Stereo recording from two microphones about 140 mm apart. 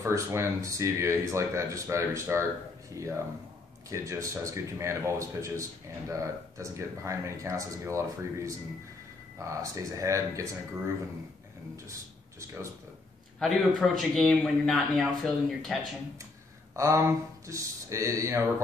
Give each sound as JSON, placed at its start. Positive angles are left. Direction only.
{"t": 0.0, "sound": "speech", "side_deg": -20}
{"t": 11.7, "sound": "speech", "side_deg": -20}
{"t": 13.4, "sound": "speech", "side_deg": 0}
{"t": 16.7, "sound": "speech", "side_deg": -20}